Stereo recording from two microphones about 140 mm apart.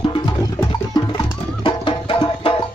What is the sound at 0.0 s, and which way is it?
Music, 35° left (ahead or behind).